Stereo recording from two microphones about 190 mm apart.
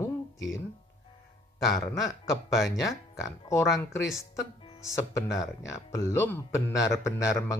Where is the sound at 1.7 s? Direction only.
20° left (ahead or behind).